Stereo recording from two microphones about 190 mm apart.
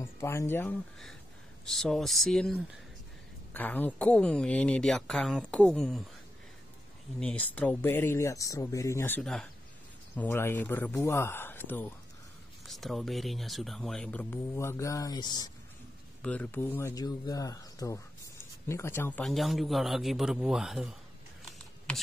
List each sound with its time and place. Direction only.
0.0 s speech: 15° left (ahead or behind)
1.7 s speech: centre (ahead or behind)
7.2 s speech: 5° left (ahead or behind)
12.6 s speech: centre (ahead or behind); by 15.5 s 20° left (ahead or behind)
16.2 s speech: 5° left (ahead or behind)